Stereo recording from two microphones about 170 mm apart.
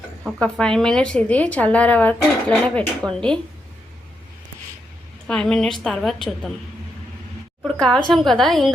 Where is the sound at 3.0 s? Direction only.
20° right (ahead or behind).